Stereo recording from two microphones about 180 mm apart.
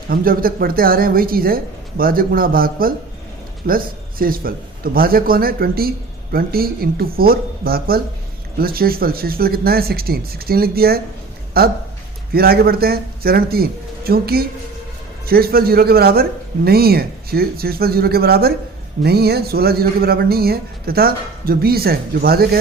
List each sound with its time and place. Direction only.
0.1 s speech: 55° right (ahead or behind)